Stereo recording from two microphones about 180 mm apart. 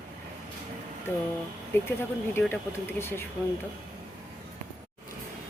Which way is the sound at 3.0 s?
15° left (ahead or behind).